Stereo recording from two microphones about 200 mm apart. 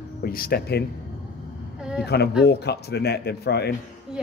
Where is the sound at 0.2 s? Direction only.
50° left (ahead or behind).